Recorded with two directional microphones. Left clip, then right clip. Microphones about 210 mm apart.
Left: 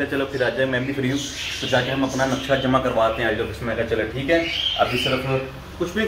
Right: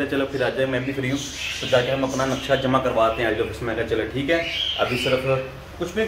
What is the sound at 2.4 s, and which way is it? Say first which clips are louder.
Speech: right 1 dB; 10° right (ahead or behind).